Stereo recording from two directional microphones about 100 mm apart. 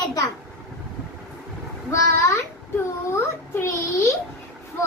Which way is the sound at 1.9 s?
30° left (ahead or behind).